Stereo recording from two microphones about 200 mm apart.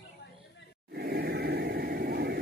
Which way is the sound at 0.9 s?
50° right (ahead or behind).